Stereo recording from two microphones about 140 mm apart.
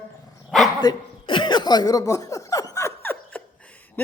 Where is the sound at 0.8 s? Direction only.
35° left (ahead or behind); by 3.4 s 15° left (ahead or behind).